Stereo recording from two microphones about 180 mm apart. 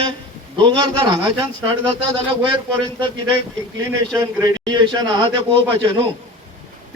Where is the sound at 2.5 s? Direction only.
25° right (ahead or behind).